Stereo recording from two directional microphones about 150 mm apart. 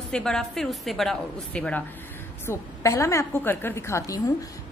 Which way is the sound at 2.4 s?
20° left (ahead or behind).